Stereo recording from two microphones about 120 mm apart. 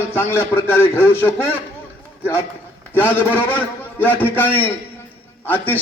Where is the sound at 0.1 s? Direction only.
15° left (ahead or behind).